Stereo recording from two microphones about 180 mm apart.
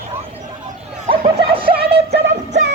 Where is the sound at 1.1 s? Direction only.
30° right (ahead or behind).